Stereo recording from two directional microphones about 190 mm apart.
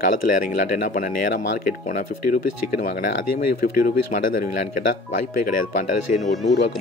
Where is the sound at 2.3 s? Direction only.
50° left (ahead or behind).